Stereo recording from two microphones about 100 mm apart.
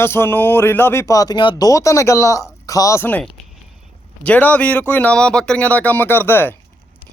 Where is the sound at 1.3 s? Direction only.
50° left (ahead or behind).